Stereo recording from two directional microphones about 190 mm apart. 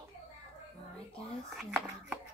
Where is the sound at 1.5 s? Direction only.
5° right (ahead or behind).